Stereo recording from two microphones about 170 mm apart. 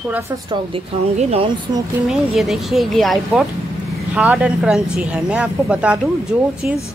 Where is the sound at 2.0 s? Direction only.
Centre (ahead or behind).